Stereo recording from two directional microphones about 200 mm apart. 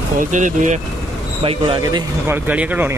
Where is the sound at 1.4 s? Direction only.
25° right (ahead or behind).